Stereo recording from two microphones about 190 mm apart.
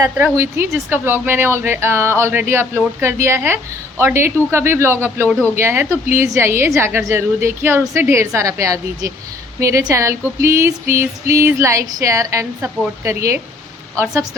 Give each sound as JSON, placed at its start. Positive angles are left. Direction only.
{"t": 0.0, "sound": "a woman's voice", "side_deg": -10}